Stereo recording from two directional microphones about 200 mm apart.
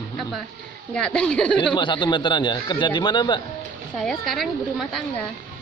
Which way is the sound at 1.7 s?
25° left (ahead or behind).